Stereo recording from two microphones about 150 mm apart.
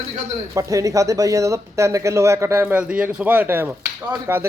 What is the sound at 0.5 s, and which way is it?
Speech, 20° right (ahead or behind).